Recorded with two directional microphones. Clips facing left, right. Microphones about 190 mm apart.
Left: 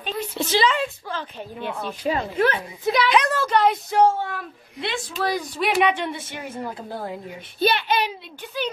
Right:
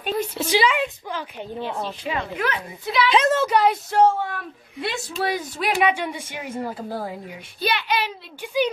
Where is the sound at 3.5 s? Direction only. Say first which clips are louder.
Even; 5° right (ahead or behind).